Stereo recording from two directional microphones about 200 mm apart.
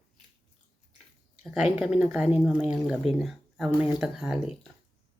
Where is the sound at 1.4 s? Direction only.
5° right (ahead or behind).